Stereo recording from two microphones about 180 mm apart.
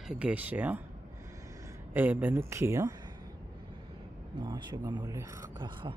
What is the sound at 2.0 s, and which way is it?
Speech, 10° right (ahead or behind).